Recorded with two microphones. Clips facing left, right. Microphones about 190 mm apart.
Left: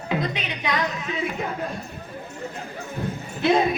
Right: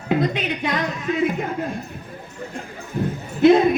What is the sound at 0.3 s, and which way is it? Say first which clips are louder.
Speech: right 3 dB; 50° right (ahead or behind).